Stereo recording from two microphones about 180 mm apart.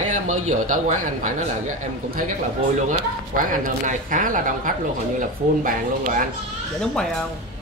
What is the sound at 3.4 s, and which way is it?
Speech, 50° right (ahead or behind).